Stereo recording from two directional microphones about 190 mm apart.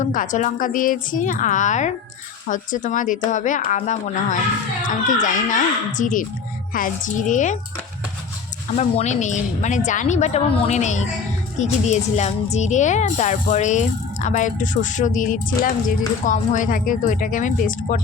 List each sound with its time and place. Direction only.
0.0 s a woman's voice: 45° left (ahead or behind)
8.7 s a woman's voice: 35° left (ahead or behind)